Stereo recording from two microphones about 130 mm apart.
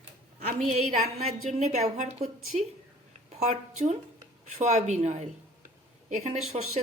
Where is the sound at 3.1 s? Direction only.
60° right (ahead or behind).